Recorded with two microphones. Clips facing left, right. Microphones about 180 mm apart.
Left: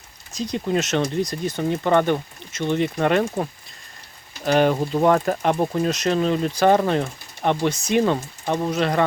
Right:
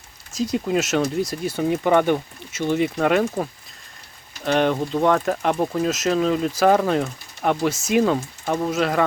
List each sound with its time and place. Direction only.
0.3 s speech: 5° right (ahead or behind)